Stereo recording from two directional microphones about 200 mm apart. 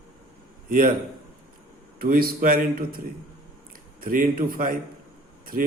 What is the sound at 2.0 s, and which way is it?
A man's voice, 50° right (ahead or behind).